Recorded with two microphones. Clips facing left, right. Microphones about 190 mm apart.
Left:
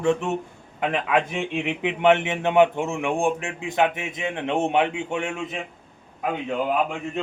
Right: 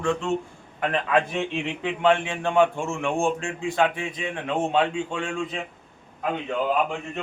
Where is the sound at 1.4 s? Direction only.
15° left (ahead or behind).